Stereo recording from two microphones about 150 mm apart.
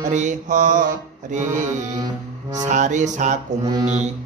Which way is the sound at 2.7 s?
55° right (ahead or behind).